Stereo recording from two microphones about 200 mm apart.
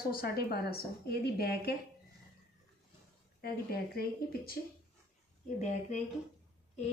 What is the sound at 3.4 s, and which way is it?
A woman's voice, 50° left (ahead or behind).